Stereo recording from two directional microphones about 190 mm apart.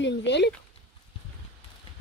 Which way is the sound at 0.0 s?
65° left (ahead or behind).